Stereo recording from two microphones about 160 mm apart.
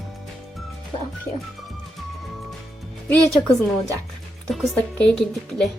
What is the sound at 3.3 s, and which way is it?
A woman's voice, centre (ahead or behind).